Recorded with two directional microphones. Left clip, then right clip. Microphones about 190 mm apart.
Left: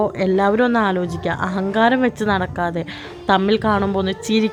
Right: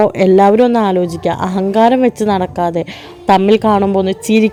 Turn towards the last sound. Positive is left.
turn(degrees=-30)  # may be behind; listen again after turning